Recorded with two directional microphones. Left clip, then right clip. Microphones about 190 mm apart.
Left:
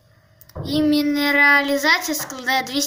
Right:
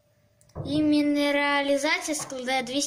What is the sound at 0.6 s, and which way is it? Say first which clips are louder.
A child's voice: left 4 dB; 25° right (ahead or behind).